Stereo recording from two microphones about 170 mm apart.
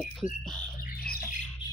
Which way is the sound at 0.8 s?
60° left (ahead or behind).